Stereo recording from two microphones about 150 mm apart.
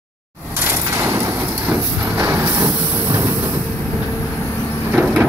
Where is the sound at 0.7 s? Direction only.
15° right (ahead or behind).